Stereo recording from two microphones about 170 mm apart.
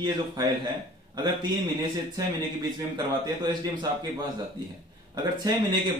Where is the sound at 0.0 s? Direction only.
25° right (ahead or behind).